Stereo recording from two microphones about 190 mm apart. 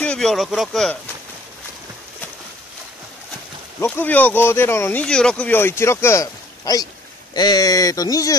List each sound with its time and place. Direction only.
0.0 s speech: 5° left (ahead or behind)
3.8 s speech: 10° left (ahead or behind)